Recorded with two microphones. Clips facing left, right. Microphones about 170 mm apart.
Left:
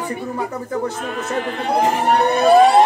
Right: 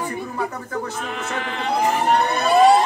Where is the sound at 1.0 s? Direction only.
40° left (ahead or behind).